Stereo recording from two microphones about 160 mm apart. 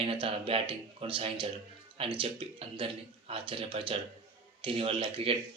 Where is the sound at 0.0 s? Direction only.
35° right (ahead or behind).